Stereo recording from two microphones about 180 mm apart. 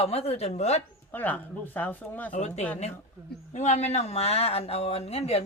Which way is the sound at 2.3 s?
40° left (ahead or behind).